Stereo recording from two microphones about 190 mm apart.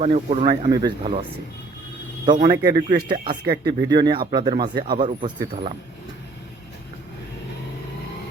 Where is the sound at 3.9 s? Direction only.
20° right (ahead or behind).